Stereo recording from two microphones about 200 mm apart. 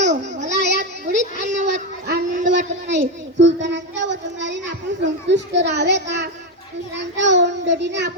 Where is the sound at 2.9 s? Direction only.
60° right (ahead or behind).